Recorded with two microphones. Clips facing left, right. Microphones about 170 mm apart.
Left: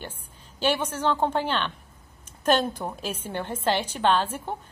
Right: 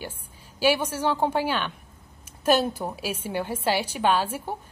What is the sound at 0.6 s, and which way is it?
A woman's voice, 10° right (ahead or behind).